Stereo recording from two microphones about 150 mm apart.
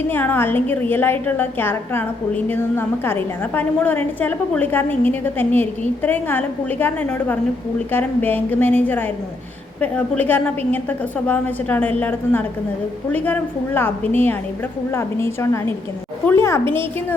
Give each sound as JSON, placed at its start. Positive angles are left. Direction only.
{"t": 0.1, "sound": "a woman's voice", "side_deg": 15}